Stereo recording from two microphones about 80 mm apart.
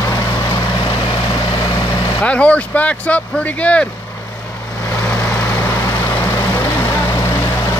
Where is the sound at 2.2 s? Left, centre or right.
Centre.